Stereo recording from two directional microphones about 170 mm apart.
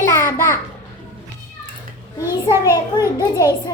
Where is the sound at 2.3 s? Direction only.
20° left (ahead or behind).